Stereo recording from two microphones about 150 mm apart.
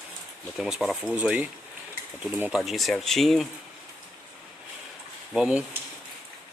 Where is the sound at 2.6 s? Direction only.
Centre (ahead or behind).